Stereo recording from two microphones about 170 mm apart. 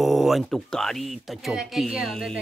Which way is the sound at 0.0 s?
Centre (ahead or behind).